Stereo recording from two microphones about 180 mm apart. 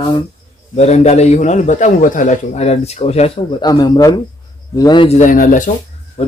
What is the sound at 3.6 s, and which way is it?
Speech, 25° left (ahead or behind).